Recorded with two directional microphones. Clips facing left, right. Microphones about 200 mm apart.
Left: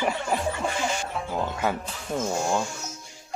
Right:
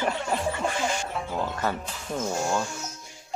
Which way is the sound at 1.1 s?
Centre (ahead or behind).